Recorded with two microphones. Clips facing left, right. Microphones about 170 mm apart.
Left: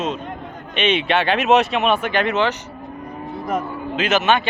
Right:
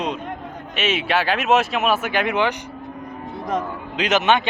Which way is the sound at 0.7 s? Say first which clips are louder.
Left 3 dB; 5° right (ahead or behind).